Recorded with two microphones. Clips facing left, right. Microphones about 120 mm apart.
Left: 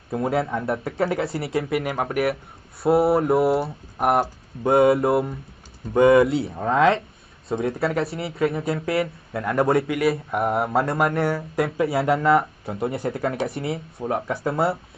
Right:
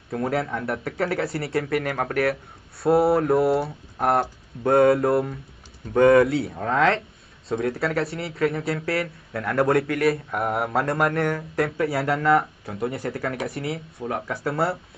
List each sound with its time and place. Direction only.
0.1 s speech: 20° left (ahead or behind)
4.0 s speech: 15° left (ahead or behind)
6.5 s speech: 15° left (ahead or behind)
7.4 s speech: 25° left (ahead or behind)
9.7 s speech: centre (ahead or behind)
11.7 s speech: 20° left (ahead or behind)